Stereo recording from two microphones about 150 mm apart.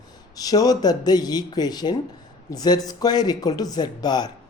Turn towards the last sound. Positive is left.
turn(degrees=30)  # may be behind; listen again after turning